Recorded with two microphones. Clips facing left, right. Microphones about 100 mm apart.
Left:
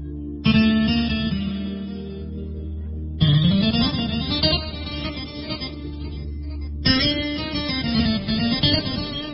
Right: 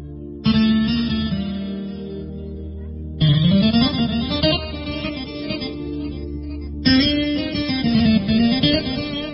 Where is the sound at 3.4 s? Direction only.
25° right (ahead or behind).